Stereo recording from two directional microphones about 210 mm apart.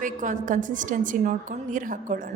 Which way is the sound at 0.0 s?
35° right (ahead or behind).